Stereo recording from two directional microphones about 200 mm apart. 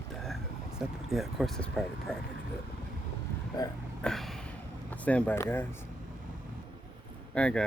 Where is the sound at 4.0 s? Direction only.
Centre (ahead or behind).